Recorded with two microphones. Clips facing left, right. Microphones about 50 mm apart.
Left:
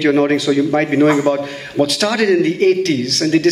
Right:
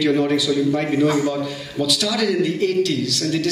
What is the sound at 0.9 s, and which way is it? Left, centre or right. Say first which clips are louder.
A man's voice: left 5 dB; left.